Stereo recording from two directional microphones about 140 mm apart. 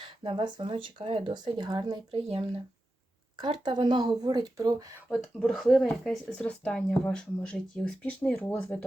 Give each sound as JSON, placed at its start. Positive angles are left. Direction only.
{"t": 0.0, "sound": "speech", "side_deg": -35}
{"t": 3.3, "sound": "speech", "side_deg": -30}
{"t": 5.1, "sound": "speech", "side_deg": 0}